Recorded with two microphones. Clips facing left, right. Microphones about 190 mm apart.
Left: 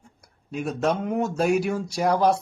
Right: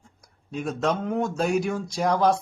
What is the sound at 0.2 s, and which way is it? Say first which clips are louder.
A man's voice: left 1 dB; 10° left (ahead or behind).